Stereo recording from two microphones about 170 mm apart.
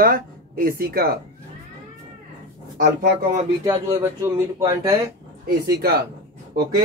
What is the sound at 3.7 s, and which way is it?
Speech, 20° right (ahead or behind).